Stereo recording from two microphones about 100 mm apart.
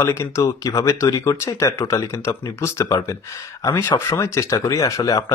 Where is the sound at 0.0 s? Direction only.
30° left (ahead or behind).